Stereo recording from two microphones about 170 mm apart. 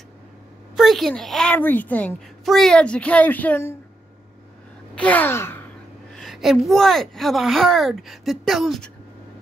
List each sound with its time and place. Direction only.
0.7 s a child's voice: centre (ahead or behind)
4.9 s sigh: 10° left (ahead or behind)
6.1 s speech: centre (ahead or behind)